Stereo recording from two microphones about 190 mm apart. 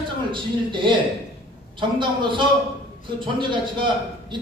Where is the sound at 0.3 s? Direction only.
25° right (ahead or behind).